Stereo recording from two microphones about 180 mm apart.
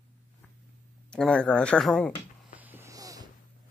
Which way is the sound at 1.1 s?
5° left (ahead or behind).